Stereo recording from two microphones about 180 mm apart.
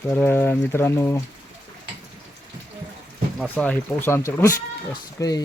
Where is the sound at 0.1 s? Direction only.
10° left (ahead or behind).